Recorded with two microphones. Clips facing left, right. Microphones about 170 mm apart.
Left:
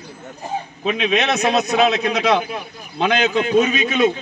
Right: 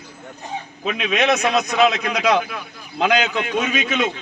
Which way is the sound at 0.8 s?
30° left (ahead or behind).